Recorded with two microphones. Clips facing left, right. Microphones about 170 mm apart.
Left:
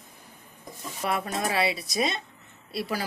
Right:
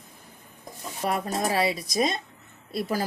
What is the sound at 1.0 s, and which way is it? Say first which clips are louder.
Speech: right 2 dB; 35° right (ahead or behind).